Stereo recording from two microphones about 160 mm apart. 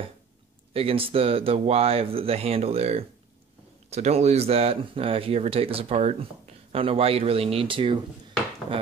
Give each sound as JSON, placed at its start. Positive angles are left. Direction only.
{"t": 0.7, "sound": "speech", "side_deg": -35}